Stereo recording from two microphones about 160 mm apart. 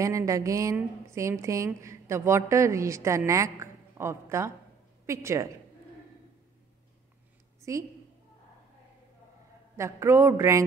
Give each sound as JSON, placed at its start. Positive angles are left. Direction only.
{"t": 0.0, "sound": "a woman's voice", "side_deg": -20}
{"t": 9.8, "sound": "a woman's voice", "side_deg": -15}